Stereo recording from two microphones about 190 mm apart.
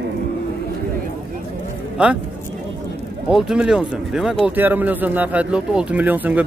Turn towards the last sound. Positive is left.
turn(degrees=-10)  # may be behind; listen again after turning